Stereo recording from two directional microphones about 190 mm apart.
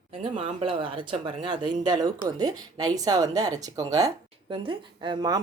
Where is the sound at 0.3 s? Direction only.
30° right (ahead or behind).